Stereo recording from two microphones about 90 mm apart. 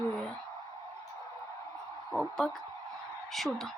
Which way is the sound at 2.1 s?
5° left (ahead or behind).